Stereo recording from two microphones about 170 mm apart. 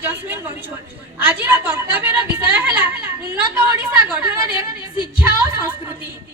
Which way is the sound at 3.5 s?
10° right (ahead or behind).